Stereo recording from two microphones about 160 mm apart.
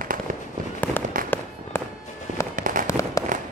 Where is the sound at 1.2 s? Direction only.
60° right (ahead or behind).